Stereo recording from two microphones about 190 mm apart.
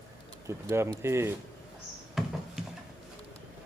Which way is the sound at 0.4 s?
15° right (ahead or behind).